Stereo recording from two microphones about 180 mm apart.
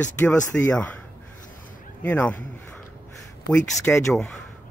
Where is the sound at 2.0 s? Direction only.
10° left (ahead or behind).